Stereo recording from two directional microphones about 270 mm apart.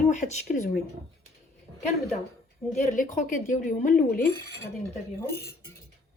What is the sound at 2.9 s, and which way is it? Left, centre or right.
Speech, left.